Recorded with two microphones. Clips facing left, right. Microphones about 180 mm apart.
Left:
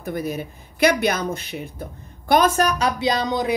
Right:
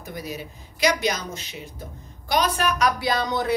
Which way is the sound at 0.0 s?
55° left (ahead or behind).